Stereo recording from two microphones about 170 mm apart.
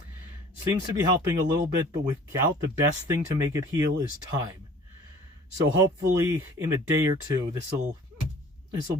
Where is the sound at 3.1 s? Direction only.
20° right (ahead or behind).